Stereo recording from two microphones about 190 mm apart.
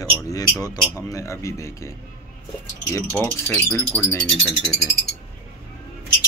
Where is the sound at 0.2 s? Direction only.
20° left (ahead or behind).